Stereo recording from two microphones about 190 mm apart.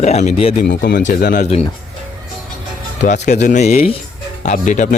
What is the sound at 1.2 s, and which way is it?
Speech, 45° left (ahead or behind).